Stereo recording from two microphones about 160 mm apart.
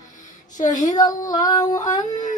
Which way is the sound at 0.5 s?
50° left (ahead or behind).